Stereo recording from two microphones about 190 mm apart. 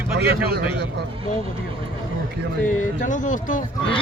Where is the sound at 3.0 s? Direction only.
40° left (ahead or behind).